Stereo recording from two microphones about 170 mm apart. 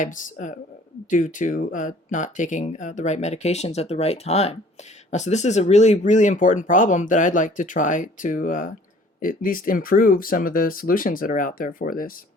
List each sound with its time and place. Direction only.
0.0 s speech: 50° left (ahead or behind)